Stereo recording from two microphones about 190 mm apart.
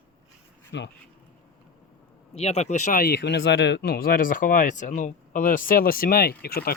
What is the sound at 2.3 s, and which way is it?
Speech, 35° left (ahead or behind).